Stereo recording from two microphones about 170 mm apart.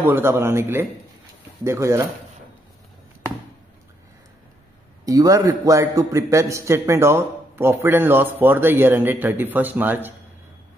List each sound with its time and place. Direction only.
0.0 s a man's voice: 15° right (ahead or behind)
5.0 s a man's voice: 20° right (ahead or behind)